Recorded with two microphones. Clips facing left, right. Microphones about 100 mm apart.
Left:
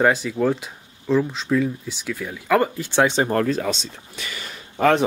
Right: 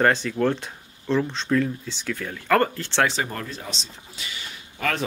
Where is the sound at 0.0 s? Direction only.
5° left (ahead or behind).